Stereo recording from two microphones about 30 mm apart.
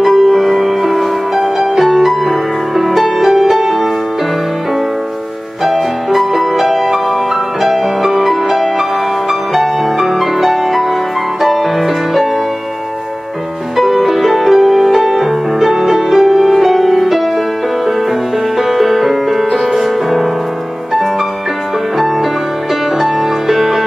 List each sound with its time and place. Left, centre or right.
0.0 s music: centre
5.6 s music: centre
13.7 s music: centre
18.6 s music: centre
21.9 s music: centre